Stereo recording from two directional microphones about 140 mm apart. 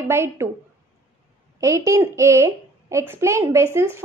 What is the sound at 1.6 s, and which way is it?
A woman's voice, 20° right (ahead or behind).